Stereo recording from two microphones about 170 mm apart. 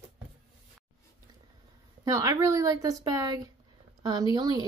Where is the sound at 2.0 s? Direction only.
20° right (ahead or behind).